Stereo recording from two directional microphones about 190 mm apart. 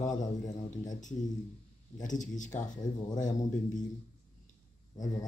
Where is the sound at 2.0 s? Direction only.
40° left (ahead or behind).